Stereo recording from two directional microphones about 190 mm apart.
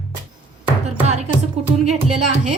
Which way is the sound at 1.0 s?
35° right (ahead or behind).